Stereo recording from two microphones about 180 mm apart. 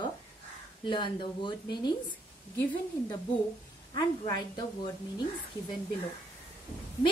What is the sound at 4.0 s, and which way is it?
Speech, 20° left (ahead or behind).